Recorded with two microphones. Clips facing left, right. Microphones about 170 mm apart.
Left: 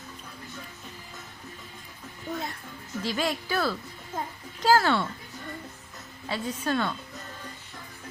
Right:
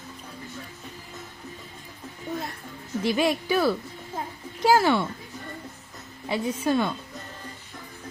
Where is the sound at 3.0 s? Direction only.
15° right (ahead or behind).